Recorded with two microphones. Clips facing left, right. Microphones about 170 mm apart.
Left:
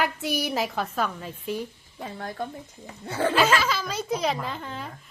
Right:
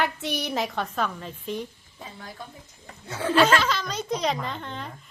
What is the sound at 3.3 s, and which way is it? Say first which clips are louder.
A woman's voice: right 4 dB; 5° left (ahead or behind).